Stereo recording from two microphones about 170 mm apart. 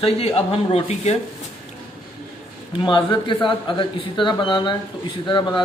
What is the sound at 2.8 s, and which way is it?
Speech, 25° left (ahead or behind).